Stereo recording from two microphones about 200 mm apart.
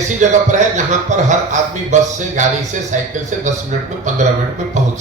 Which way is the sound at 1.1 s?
35° right (ahead or behind).